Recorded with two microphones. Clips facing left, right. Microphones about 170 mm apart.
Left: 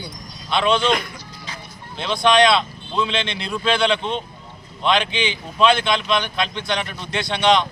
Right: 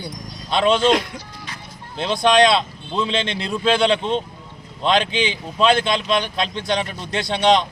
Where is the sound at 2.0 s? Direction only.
40° right (ahead or behind).